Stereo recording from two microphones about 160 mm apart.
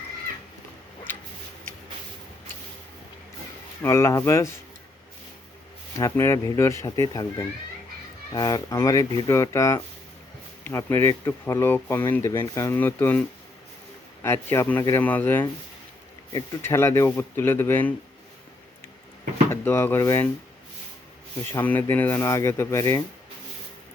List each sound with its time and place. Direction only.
3.8 s speech: 20° left (ahead or behind)
6.0 s speech: 20° left (ahead or behind)
19.5 s speech: 15° left (ahead or behind)
21.5 s speech: 10° left (ahead or behind)